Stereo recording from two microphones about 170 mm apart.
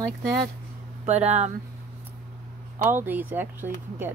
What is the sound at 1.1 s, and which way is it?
Speech, 40° right (ahead or behind).